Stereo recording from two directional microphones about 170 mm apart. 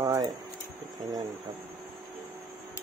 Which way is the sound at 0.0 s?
20° right (ahead or behind).